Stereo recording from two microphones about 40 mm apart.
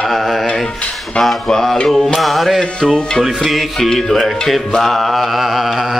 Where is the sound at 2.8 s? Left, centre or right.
Centre.